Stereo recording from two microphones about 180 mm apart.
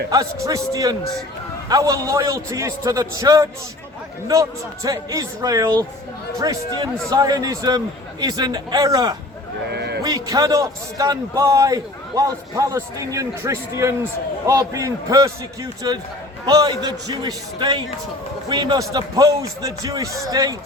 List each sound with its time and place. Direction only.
0.1 s a man's voice: 20° right (ahead or behind)
9.6 s speech: 65° right (ahead or behind)
10.0 s a man's voice: 20° right (ahead or behind)